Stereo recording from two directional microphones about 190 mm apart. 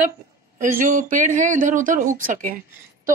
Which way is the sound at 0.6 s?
45° right (ahead or behind).